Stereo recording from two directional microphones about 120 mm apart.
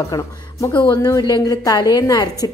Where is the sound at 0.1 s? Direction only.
30° left (ahead or behind).